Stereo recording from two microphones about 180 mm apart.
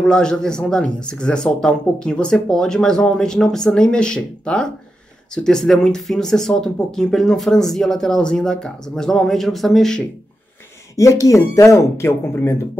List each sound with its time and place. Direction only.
0.0 s speech: 5° left (ahead or behind)
11.0 s speech: 15° left (ahead or behind)